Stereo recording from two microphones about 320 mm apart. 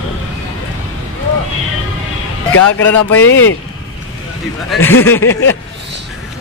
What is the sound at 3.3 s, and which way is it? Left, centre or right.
Speech, left.